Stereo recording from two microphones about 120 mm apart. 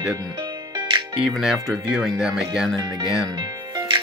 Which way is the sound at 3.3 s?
35° right (ahead or behind).